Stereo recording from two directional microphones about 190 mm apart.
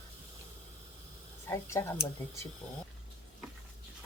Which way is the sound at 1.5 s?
15° left (ahead or behind).